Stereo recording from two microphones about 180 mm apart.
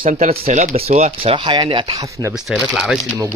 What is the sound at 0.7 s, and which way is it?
Speech, 35° right (ahead or behind).